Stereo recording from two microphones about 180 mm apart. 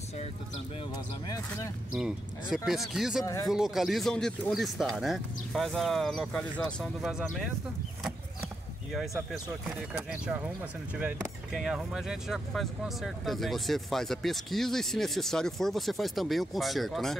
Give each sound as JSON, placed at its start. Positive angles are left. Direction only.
{"t": 0.9, "sound": "speech", "side_deg": 20}
{"t": 2.0, "sound": "speech", "side_deg": 0}
{"t": 8.9, "sound": "speech", "side_deg": 0}